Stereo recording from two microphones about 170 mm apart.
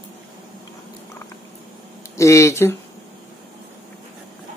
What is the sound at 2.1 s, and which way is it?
Speech, 15° left (ahead or behind).